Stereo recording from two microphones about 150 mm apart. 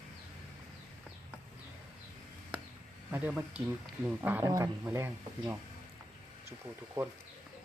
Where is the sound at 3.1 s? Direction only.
10° right (ahead or behind).